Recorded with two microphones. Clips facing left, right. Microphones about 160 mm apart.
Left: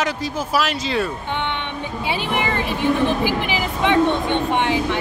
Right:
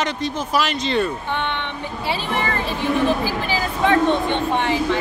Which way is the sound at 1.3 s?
15° left (ahead or behind).